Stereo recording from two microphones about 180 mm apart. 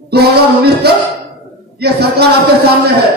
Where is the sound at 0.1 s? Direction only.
65° right (ahead or behind).